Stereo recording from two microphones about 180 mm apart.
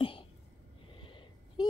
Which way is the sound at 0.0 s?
30° left (ahead or behind).